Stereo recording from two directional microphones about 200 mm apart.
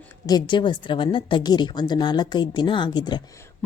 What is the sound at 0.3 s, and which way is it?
A woman's voice, 20° left (ahead or behind).